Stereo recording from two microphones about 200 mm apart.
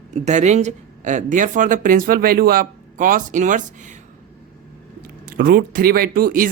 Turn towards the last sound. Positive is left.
turn(degrees=-45)  # may be behind; listen again after turning